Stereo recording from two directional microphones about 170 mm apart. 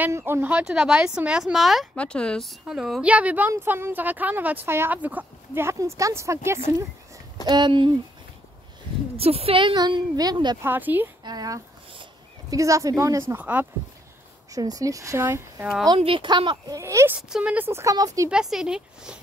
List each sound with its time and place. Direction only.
0.0 s a woman's voice: 15° right (ahead or behind)
9.1 s a woman's voice: 35° right (ahead or behind)
10.6 s speech: 10° right (ahead or behind)
11.2 s a sound: 20° right (ahead or behind)
12.5 s speech: 20° right (ahead or behind)
14.5 s a woman's voice: 20° right (ahead or behind)
16.0 s a woman's voice: 30° right (ahead or behind)
18.3 s speech: 5° right (ahead or behind)